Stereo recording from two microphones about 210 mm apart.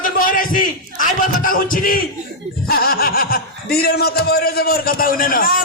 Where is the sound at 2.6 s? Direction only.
45° left (ahead or behind).